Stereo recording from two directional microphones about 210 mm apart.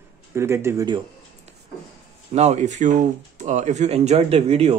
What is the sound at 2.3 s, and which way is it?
Speech, 30° right (ahead or behind).